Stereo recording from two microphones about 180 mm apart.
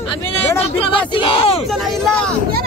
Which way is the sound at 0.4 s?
30° left (ahead or behind).